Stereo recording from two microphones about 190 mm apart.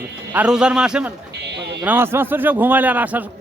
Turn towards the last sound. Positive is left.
turn(degrees=-10)  # may be behind; listen again after turning